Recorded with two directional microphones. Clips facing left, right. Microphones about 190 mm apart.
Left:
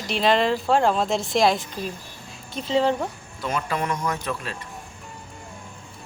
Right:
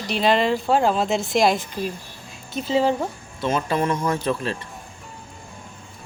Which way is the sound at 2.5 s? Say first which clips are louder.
Right 1 dB; 5° right (ahead or behind).